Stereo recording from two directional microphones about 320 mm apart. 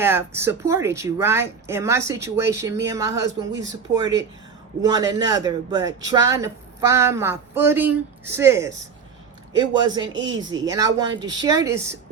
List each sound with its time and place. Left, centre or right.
0.0 s speech: centre
4.8 s speech: centre
10.1 s speech: right
10.3 s speech: centre